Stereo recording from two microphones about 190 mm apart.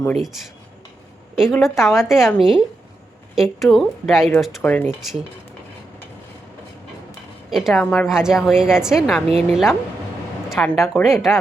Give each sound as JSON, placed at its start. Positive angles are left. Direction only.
{"t": 1.4, "sound": "a woman's voice", "side_deg": 0}
{"t": 7.5, "sound": "a woman's voice", "side_deg": 0}